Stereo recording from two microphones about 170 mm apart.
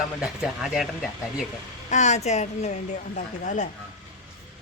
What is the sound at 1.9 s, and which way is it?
Speech, 45° left (ahead or behind).